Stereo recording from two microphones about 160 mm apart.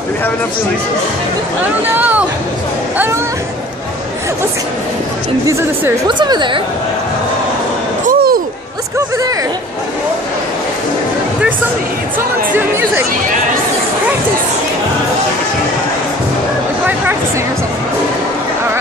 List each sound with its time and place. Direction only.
2.0 s speech: 10° right (ahead or behind)
5.5 s speech: 15° right (ahead or behind)
6.0 s a woman's voice: 30° right (ahead or behind)
8.1 s a sound: 65° right (ahead or behind)
12.5 s speech: 15° right (ahead or behind)